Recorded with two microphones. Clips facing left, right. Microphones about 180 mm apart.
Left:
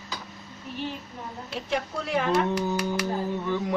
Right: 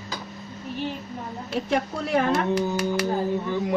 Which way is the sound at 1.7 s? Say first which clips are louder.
Right 3 dB; 50° right (ahead or behind).